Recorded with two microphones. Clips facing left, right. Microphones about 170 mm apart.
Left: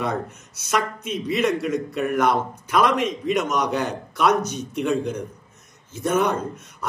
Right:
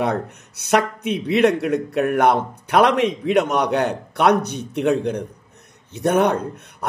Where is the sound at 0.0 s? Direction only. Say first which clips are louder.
Right 4 dB; 65° right (ahead or behind).